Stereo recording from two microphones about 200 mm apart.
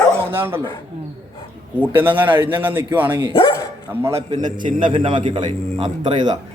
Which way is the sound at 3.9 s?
10° right (ahead or behind).